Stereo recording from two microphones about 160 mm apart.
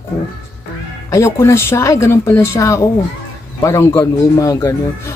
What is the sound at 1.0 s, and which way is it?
Speech, 15° left (ahead or behind).